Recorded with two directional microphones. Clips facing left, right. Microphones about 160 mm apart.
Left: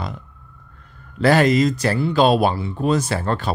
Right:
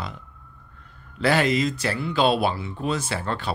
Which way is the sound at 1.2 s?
45° left (ahead or behind).